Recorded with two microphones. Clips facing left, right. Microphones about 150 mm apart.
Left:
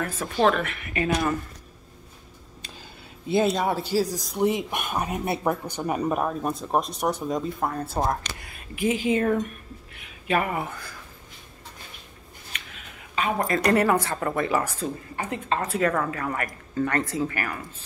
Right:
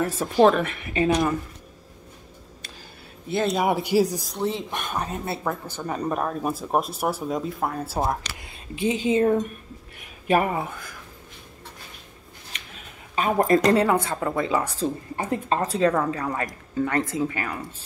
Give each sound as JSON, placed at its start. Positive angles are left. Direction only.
{"t": 0.2, "sound": "speech", "side_deg": -5}
{"t": 0.6, "sound": "a woman's voice", "side_deg": -20}
{"t": 3.5, "sound": "speech", "side_deg": -15}
{"t": 4.4, "sound": "speech", "side_deg": 15}
{"t": 8.4, "sound": "speech", "side_deg": -25}
{"t": 10.5, "sound": "a woman's voice", "side_deg": -20}
{"t": 13.1, "sound": "a woman's voice", "side_deg": -40}
{"t": 13.6, "sound": "a woman's voice", "side_deg": -25}
{"t": 15.1, "sound": "a woman's voice", "side_deg": -35}
{"t": 16.1, "sound": "a woman's voice", "side_deg": -20}